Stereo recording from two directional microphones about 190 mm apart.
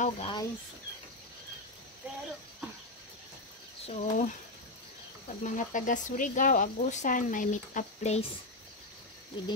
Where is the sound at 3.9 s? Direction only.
40° left (ahead or behind).